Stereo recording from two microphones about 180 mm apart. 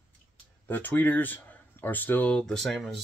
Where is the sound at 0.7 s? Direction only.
10° left (ahead or behind).